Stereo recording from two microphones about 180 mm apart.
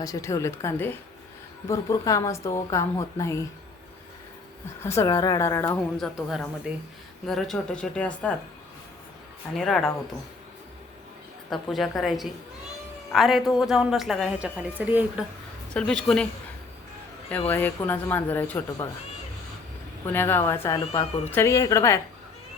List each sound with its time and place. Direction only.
0.0 s a woman's voice: 20° left (ahead or behind)
4.8 s a woman's voice: 15° left (ahead or behind)
6.0 s a woman's voice: centre (ahead or behind)
9.6 s a woman's voice: 5° left (ahead or behind)
11.5 s a woman's voice: centre (ahead or behind)
15.7 s a woman's voice: 5° left (ahead or behind)
17.3 s a woman's voice: 10° left (ahead or behind)
20.1 s a woman's voice: 10° left (ahead or behind)